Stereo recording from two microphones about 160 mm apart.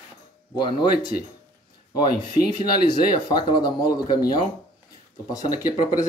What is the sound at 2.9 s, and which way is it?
Speech, 25° left (ahead or behind).